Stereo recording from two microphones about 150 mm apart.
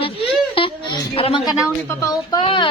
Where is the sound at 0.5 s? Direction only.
35° left (ahead or behind).